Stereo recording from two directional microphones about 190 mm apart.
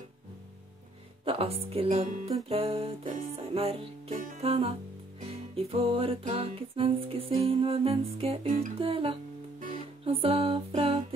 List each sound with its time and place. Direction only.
1.2 s music: 30° right (ahead or behind)